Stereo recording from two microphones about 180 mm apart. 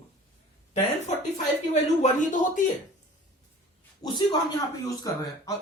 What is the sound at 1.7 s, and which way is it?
Speech, 40° left (ahead or behind).